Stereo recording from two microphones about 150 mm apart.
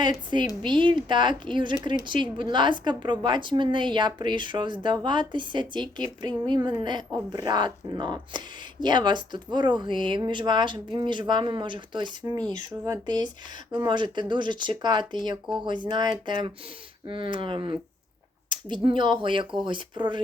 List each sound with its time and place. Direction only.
0.0 s a woman's voice: 30° right (ahead or behind)